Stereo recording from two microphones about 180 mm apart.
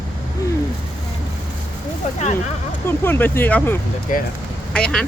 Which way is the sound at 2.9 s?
10° left (ahead or behind).